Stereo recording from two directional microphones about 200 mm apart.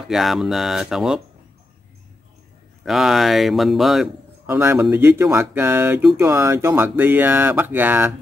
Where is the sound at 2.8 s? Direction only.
Centre (ahead or behind).